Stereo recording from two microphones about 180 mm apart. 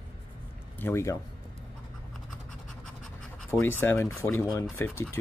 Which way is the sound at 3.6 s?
15° left (ahead or behind).